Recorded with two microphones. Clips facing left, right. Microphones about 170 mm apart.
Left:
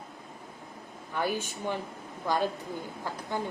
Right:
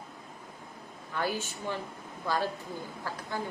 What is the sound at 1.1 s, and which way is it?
A woman's voice, 15° left (ahead or behind).